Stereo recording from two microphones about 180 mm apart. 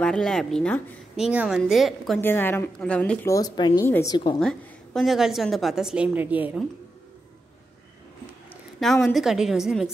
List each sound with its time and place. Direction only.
0.0 s a woman's voice: 5° left (ahead or behind)
1.1 s a woman's voice: 5° right (ahead or behind)
2.2 s a woman's voice: 10° left (ahead or behind)
4.4 s a woman's voice: centre (ahead or behind)
8.7 s a woman's voice: centre (ahead or behind)